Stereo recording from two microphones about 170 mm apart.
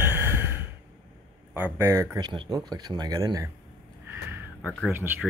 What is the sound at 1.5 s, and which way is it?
Speech, 10° right (ahead or behind).